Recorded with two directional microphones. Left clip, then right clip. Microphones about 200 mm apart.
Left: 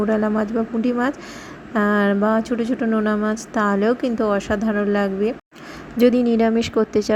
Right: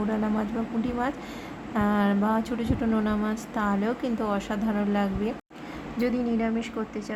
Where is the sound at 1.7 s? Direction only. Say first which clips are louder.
Left 7 dB; 25° left (ahead or behind).